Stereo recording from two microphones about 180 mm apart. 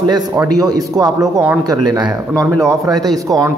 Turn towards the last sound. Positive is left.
turn(degrees=-20)  # may be behind; listen again after turning